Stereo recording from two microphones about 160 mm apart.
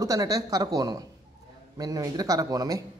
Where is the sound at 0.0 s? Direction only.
20° right (ahead or behind).